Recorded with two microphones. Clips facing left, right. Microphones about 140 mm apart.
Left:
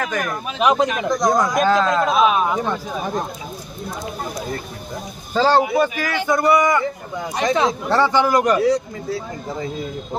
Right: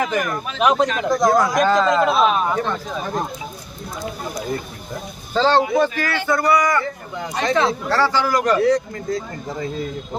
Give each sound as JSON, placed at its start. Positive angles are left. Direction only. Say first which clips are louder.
{"t": 0.0, "sound": "speech", "louder": "right 2 dB", "side_deg": -5}
{"t": 5.3, "sound": "speech", "louder": "even", "side_deg": 10}